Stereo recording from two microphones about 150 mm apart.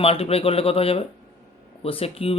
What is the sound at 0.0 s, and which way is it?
Speech, 40° left (ahead or behind).